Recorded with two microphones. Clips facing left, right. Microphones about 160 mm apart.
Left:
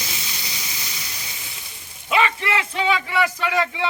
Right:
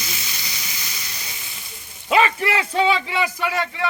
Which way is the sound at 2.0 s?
35° right (ahead or behind).